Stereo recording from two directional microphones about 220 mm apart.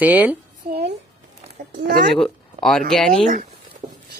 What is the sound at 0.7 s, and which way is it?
Music, 45° right (ahead or behind).